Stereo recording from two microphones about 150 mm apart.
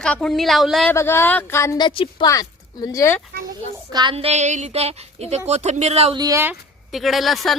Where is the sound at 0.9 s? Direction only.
15° left (ahead or behind).